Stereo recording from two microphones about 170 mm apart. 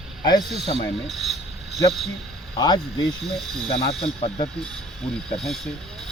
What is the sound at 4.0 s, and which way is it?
Speech, 40° left (ahead or behind).